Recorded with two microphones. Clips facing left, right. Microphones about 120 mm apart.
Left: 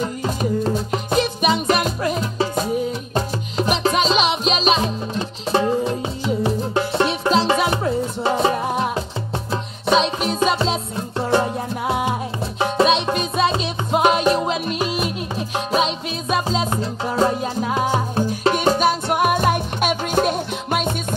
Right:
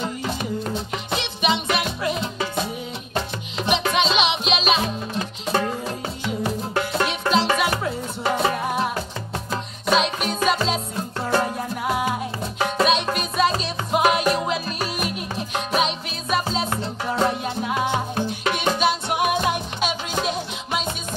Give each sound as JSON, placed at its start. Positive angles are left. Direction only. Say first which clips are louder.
{"t": 0.0, "sound": "music", "louder": "left 4 dB", "side_deg": 35}